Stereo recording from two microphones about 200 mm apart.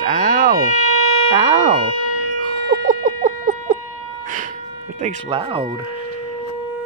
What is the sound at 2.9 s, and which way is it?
Rodents, 40° right (ahead or behind).